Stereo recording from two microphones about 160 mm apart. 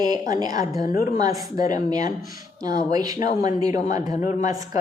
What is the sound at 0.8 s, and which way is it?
Speech, 60° left (ahead or behind).